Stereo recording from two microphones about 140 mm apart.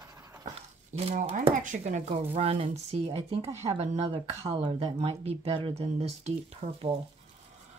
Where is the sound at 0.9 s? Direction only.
60° right (ahead or behind); by 6.9 s 40° right (ahead or behind).